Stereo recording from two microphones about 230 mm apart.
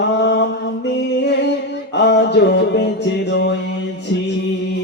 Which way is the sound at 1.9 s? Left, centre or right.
Left.